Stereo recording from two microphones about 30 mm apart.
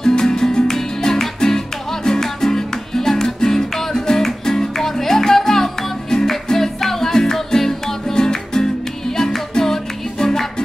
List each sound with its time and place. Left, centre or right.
0.0 s music: centre